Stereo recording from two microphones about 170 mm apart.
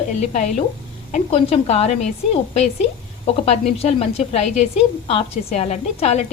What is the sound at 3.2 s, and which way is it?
A woman's voice, 40° left (ahead or behind).